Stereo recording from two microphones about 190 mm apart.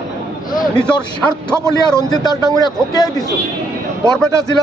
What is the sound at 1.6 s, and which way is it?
Speech, 15° right (ahead or behind).